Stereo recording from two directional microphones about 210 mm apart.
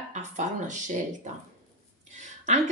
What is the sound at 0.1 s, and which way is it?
Speech, 35° right (ahead or behind).